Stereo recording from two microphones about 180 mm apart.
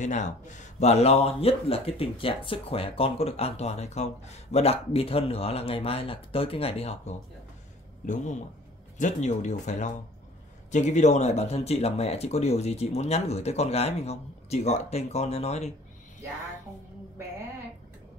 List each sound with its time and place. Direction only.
0.0 s speech: 40° left (ahead or behind)